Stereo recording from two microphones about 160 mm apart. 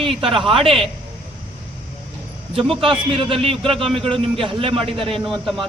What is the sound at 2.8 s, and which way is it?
A man's voice, 35° right (ahead or behind).